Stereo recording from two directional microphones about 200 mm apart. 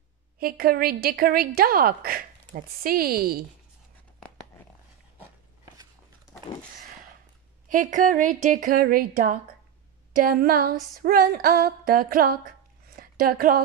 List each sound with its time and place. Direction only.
0.4 s a woman's voice: 50° right (ahead or behind)
7.6 s a woman's voice: 40° right (ahead or behind)
11.0 s a sound: 45° right (ahead or behind)